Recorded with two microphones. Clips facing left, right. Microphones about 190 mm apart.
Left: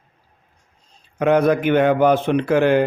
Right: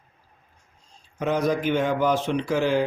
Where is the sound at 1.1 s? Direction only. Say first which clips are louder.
Left 7 dB; 60° left (ahead or behind).